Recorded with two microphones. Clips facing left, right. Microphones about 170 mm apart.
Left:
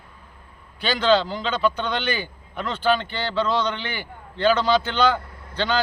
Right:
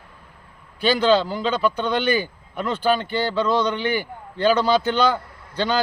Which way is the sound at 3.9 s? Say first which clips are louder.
Right 8 dB; 45° right (ahead or behind).